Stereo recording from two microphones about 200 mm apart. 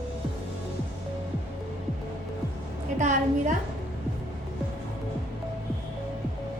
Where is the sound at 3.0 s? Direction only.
40° right (ahead or behind).